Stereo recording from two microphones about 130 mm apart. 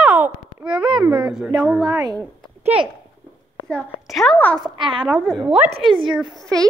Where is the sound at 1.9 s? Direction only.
30° right (ahead or behind).